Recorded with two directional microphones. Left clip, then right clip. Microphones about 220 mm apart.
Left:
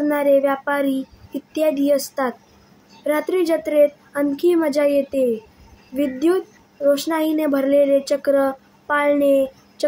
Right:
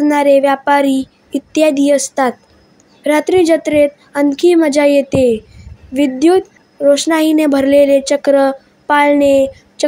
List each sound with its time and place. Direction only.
0.1 s a woman's voice: 30° right (ahead or behind)